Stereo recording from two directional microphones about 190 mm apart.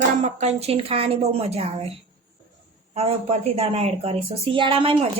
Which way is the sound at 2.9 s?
35° right (ahead or behind).